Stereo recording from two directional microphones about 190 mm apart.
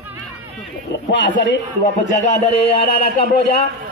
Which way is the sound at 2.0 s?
40° left (ahead or behind).